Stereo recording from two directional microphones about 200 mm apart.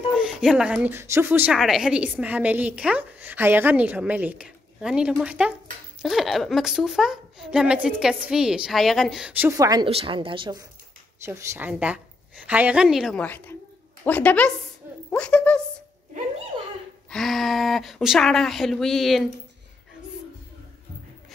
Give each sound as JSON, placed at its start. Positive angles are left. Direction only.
{"t": 0.3, "sound": "a woman's voice", "side_deg": 0}
{"t": 9.5, "sound": "speech", "side_deg": -20}
{"t": 11.2, "sound": "a woman's voice", "side_deg": -10}
{"t": 15.0, "sound": "a sound", "side_deg": 5}
{"t": 17.1, "sound": "a woman's voice", "side_deg": 0}